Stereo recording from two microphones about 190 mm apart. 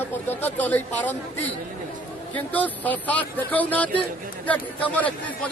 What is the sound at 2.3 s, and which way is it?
A man's voice, 10° left (ahead or behind).